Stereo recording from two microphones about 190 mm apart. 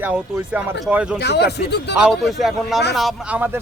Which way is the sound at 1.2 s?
60° left (ahead or behind).